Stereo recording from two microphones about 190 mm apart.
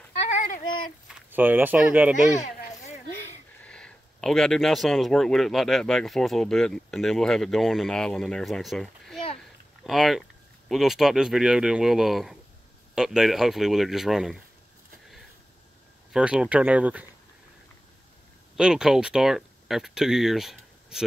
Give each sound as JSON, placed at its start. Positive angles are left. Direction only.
{"t": 0.3, "sound": "a sound", "side_deg": 45}
{"t": 1.3, "sound": "speech", "side_deg": -10}
{"t": 3.6, "sound": "speech", "side_deg": 5}
{"t": 16.1, "sound": "speech", "side_deg": -5}
{"t": 18.6, "sound": "speech", "side_deg": -5}